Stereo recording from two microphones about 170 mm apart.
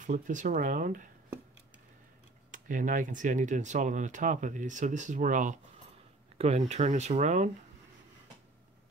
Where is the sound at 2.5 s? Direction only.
50° right (ahead or behind).